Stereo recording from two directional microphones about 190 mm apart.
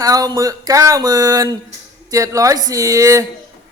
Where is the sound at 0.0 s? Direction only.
20° right (ahead or behind).